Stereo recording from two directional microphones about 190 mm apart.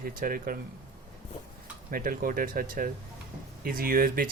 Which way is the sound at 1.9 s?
50° right (ahead or behind).